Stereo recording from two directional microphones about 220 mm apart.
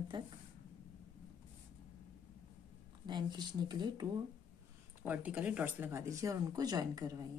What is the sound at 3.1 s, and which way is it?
Speech, 20° right (ahead or behind).